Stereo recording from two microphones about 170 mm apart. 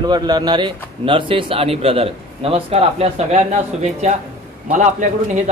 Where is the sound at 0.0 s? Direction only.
25° right (ahead or behind); by 4.2 s 40° right (ahead or behind).